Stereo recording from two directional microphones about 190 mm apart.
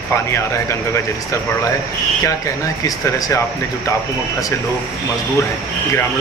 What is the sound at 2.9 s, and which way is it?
Speech, 20° left (ahead or behind).